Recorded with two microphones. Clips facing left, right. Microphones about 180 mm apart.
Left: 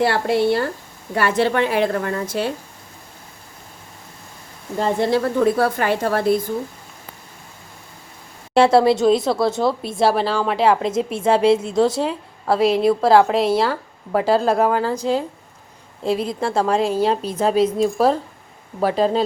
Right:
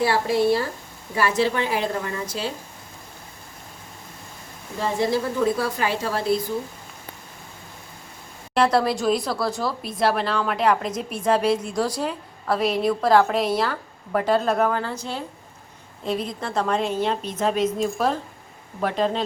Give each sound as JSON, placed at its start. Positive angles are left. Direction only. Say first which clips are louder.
{"t": 0.0, "sound": "a woman's voice", "louder": "left 2 dB", "side_deg": 60}
{"t": 4.9, "sound": "a woman's voice", "louder": "left 3 dB", "side_deg": 60}
{"t": 8.5, "sound": "a woman's voice", "louder": "left 6 dB", "side_deg": 25}
{"t": 16.0, "sound": "a woman's voice", "louder": "left 6 dB", "side_deg": 30}